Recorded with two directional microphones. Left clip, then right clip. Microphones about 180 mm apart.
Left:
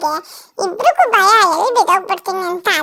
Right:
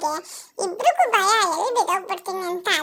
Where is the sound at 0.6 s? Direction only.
20° left (ahead or behind).